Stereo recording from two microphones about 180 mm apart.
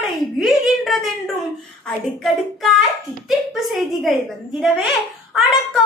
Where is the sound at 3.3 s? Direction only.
Centre (ahead or behind).